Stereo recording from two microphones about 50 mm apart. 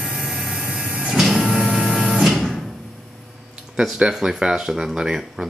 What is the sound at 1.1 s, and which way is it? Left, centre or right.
Printer, centre.